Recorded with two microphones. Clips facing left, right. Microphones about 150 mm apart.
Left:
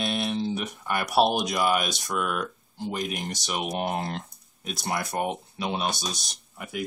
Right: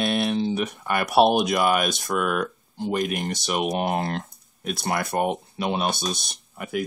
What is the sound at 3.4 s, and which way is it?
Mantra, 50° right (ahead or behind).